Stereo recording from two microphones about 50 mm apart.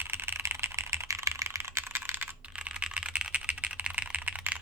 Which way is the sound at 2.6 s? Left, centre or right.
Right.